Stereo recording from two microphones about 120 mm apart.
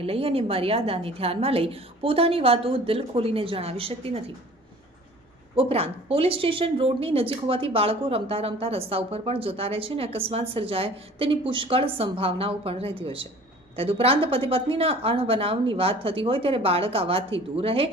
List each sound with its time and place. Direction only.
0.0 s a woman's voice: 55° right (ahead or behind)
5.5 s a woman's voice: 50° right (ahead or behind)